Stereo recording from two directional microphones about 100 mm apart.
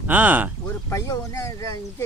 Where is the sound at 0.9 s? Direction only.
30° left (ahead or behind).